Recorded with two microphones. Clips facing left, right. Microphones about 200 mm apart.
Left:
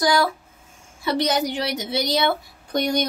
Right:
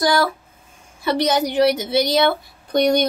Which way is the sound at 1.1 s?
Centre (ahead or behind).